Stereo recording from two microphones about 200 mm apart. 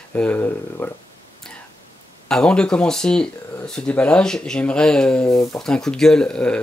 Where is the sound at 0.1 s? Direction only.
10° left (ahead or behind).